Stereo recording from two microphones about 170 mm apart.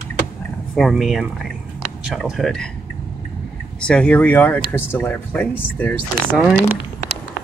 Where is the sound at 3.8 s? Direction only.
5° left (ahead or behind).